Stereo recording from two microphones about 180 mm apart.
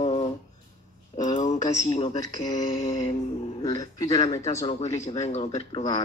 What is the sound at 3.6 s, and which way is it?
Speech, 20° left (ahead or behind).